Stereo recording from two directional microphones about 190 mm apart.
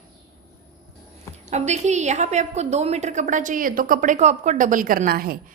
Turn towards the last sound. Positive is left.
turn(degrees=-50)  # may be behind; listen again after turning